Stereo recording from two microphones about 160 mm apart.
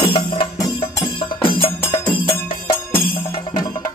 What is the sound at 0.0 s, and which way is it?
Music, 30° left (ahead or behind).